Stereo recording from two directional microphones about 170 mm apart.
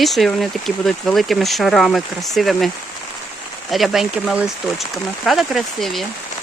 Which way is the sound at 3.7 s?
Centre (ahead or behind).